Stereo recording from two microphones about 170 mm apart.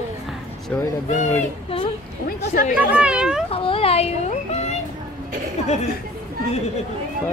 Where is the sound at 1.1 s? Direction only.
40° left (ahead or behind).